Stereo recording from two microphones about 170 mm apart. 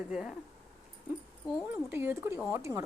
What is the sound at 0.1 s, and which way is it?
Speech, 5° right (ahead or behind).